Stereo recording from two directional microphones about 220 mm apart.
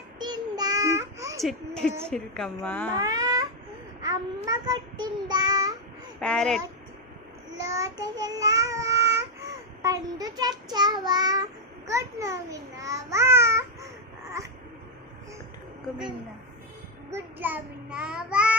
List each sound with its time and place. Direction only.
0.2 s child singing: 20° right (ahead or behind)
1.4 s a woman's voice: centre (ahead or behind)
3.0 s a sound: 15° right (ahead or behind)
4.4 s child singing: 20° right (ahead or behind)
6.1 s a woman's voice: 5° left (ahead or behind)
7.6 s child singing: 15° right (ahead or behind)
9.8 s a child's voice: 15° right (ahead or behind)
17.1 s child singing: 10° right (ahead or behind)